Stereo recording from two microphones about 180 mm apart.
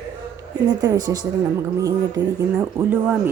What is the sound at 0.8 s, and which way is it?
A woman's voice, 20° right (ahead or behind).